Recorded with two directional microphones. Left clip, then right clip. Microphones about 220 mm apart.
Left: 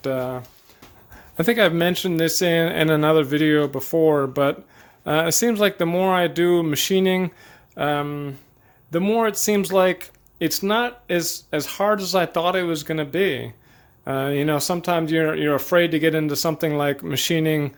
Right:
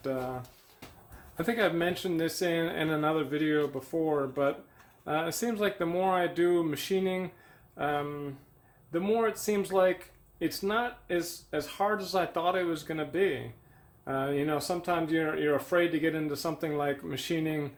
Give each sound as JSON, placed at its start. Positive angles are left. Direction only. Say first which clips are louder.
{"t": 0.0, "sound": "speech", "louder": "left 9 dB", "side_deg": 45}